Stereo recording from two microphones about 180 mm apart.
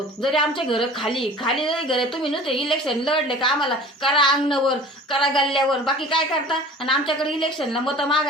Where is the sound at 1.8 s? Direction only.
25° left (ahead or behind).